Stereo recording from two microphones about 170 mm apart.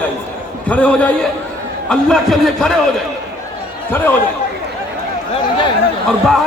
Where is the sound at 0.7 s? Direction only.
5° left (ahead or behind).